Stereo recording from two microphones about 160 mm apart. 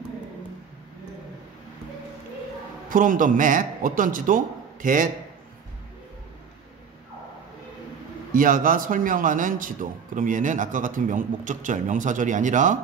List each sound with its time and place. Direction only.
2.9 s speech: 55° right (ahead or behind)
8.3 s speech: 60° right (ahead or behind)